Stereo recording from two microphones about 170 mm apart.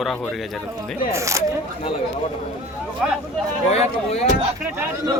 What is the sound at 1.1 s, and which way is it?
Speech, 15° right (ahead or behind).